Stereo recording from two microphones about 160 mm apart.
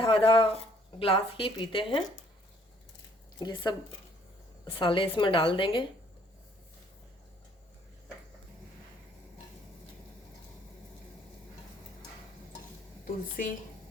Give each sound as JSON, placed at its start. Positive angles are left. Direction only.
{"t": 0.0, "sound": "speech", "side_deg": 35}
{"t": 3.4, "sound": "speech", "side_deg": 25}
{"t": 13.4, "sound": "a woman's voice", "side_deg": 55}